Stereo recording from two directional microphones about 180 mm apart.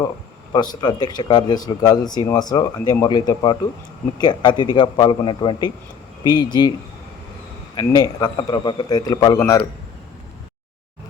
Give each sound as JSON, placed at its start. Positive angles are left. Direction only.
{"t": 0.5, "sound": "speech", "side_deg": 25}
{"t": 7.8, "sound": "speech", "side_deg": 25}